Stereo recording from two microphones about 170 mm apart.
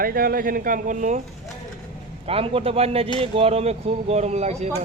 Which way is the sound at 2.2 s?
35° right (ahead or behind).